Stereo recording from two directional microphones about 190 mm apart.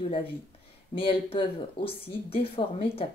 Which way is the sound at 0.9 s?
30° left (ahead or behind).